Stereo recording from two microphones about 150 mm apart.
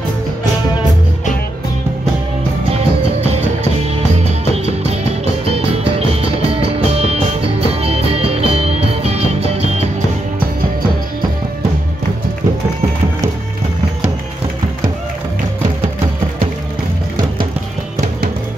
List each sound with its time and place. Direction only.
4.8 s music: 40° right (ahead or behind)